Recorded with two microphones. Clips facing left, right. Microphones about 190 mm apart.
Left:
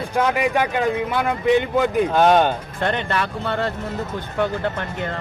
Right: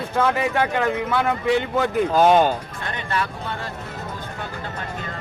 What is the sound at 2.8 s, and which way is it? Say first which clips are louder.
Speech: left 8 dB; 65° left (ahead or behind).